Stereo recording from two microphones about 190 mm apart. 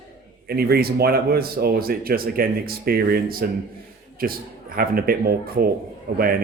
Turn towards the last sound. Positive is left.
turn(degrees=-50)  # may be behind; listen again after turning